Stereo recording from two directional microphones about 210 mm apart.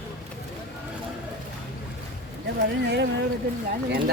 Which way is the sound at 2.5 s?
55° right (ahead or behind).